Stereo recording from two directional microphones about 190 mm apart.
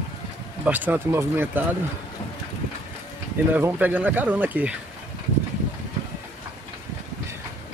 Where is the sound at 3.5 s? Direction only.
10° right (ahead or behind).